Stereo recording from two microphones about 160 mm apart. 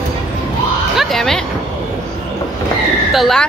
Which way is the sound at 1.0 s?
Centre (ahead or behind).